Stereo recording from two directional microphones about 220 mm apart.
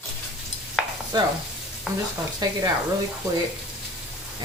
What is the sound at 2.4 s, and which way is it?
Stir, 20° right (ahead or behind).